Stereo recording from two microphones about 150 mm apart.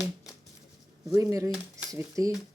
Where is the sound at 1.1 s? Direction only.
20° right (ahead or behind).